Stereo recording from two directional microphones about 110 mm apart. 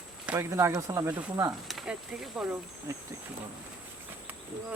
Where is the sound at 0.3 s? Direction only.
25° right (ahead or behind).